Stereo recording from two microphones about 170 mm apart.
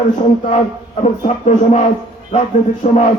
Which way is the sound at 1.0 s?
45° left (ahead or behind).